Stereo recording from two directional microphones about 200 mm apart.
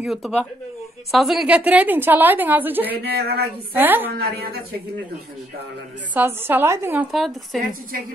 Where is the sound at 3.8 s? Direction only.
10° right (ahead or behind).